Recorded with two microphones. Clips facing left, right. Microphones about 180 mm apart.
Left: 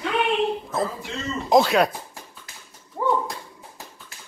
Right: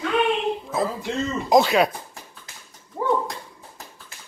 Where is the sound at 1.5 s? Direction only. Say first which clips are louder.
Even; centre (ahead or behind).